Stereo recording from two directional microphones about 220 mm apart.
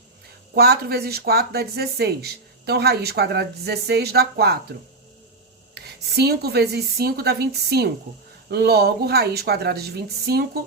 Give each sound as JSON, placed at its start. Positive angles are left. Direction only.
{"t": 0.5, "sound": "speech", "side_deg": -45}
{"t": 5.7, "sound": "speech", "side_deg": -45}